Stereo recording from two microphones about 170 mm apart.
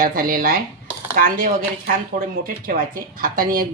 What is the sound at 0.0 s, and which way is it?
A woman's voice, 60° right (ahead or behind).